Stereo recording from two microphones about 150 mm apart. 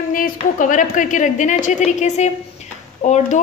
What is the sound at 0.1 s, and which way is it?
A woman's voice, 65° left (ahead or behind).